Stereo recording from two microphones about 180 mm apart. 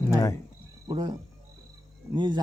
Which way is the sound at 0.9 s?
25° right (ahead or behind).